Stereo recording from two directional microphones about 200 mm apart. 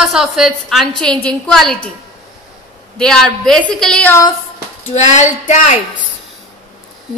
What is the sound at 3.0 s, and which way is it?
A woman's voice, 5° left (ahead or behind).